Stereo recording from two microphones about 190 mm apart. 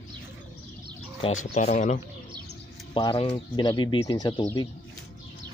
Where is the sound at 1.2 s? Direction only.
40° left (ahead or behind).